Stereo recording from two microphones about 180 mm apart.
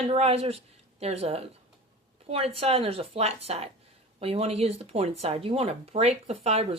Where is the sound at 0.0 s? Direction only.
35° right (ahead or behind).